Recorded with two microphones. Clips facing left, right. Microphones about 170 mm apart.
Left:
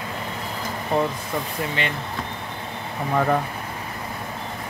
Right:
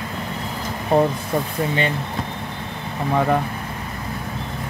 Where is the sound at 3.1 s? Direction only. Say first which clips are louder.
Right 2 dB; 15° right (ahead or behind).